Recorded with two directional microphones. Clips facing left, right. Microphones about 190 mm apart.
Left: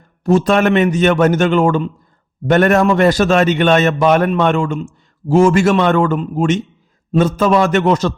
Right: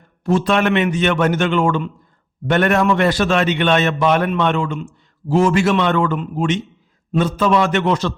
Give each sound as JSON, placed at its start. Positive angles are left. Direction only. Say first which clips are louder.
{"t": 0.3, "sound": "a man's voice", "louder": "left 4 dB", "side_deg": 40}